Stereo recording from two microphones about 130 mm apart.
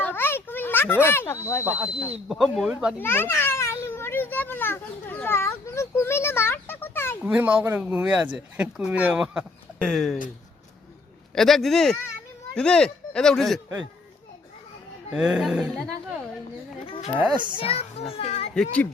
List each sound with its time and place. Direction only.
0.0 s a sound: 15° left (ahead or behind)
1.6 s speech: 15° right (ahead or behind)
2.3 s speech: centre (ahead or behind)
3.0 s a child's voice: 15° left (ahead or behind)
7.3 s speech: 10° right (ahead or behind)
9.7 s speech: 5° left (ahead or behind)
11.3 s speech: centre (ahead or behind)
15.1 s speech: 5° right (ahead or behind)
17.3 s a child's voice: 35° right (ahead or behind)
17.6 s a child's voice: 50° left (ahead or behind)
18.5 s speech: 10° left (ahead or behind)